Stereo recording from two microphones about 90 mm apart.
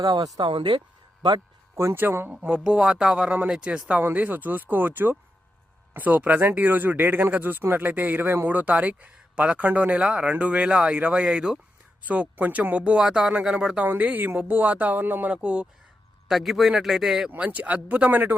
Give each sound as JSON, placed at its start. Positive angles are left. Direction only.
{"t": 0.0, "sound": "speech", "side_deg": -45}
{"t": 0.3, "sound": "speech", "side_deg": -60}
{"t": 1.7, "sound": "speech", "side_deg": -30}
{"t": 2.3, "sound": "a man's voice", "side_deg": -10}
{"t": 17.3, "sound": "a man's voice", "side_deg": -15}